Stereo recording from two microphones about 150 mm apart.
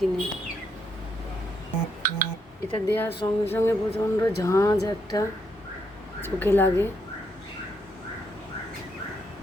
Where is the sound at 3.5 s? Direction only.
15° left (ahead or behind).